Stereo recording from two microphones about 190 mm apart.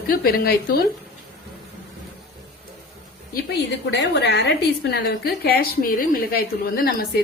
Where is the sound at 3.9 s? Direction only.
65° left (ahead or behind).